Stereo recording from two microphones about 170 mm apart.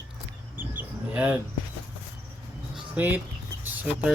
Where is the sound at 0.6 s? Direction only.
10° right (ahead or behind).